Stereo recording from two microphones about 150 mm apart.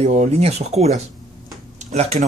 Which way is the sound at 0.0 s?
50° right (ahead or behind).